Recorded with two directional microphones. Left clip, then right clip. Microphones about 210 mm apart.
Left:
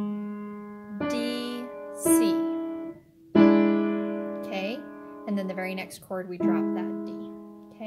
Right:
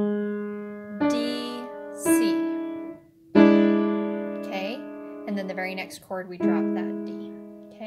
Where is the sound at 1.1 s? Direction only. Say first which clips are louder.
Right 1 dB; 10° left (ahead or behind).